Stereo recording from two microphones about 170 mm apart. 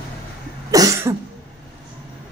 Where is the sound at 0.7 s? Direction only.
20° right (ahead or behind).